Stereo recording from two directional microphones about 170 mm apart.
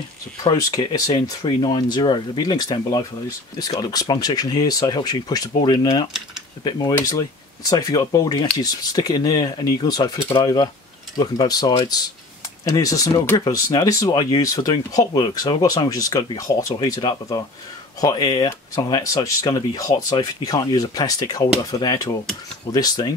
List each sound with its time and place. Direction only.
0.4 s speech: 20° left (ahead or behind)